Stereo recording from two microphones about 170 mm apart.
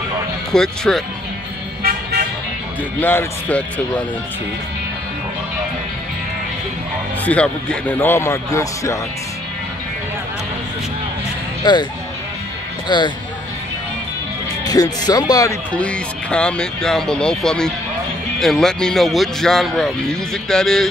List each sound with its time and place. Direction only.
0.5 s a man's voice: 5° left (ahead or behind)
3.0 s a man's voice: 10° left (ahead or behind)
7.2 s a man's voice: 5° left (ahead or behind)
11.6 s speech: 25° left (ahead or behind)
12.8 s speech: 25° left (ahead or behind)
14.6 s speech: 25° left (ahead or behind)
15.7 s a man's voice: 5° left (ahead or behind)